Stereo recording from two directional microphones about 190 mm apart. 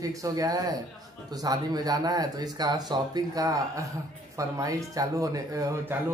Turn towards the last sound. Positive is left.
turn(degrees=-15)  # may be behind; listen again after turning